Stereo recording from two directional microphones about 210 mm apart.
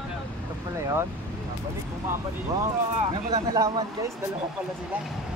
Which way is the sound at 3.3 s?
15° right (ahead or behind).